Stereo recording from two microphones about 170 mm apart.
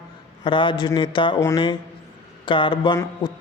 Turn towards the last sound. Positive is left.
turn(degrees=25)  # may be behind; listen again after turning